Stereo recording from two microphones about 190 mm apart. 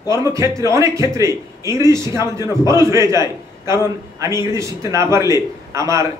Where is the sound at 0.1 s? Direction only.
15° right (ahead or behind).